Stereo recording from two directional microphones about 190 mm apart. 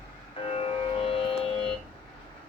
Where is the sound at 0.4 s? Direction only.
30° left (ahead or behind).